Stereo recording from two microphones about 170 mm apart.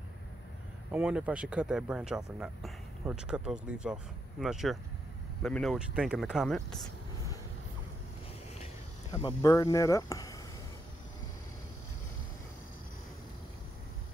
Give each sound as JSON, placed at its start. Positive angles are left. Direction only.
{"t": 0.9, "sound": "speech", "side_deg": -5}
{"t": 9.1, "sound": "speech", "side_deg": 20}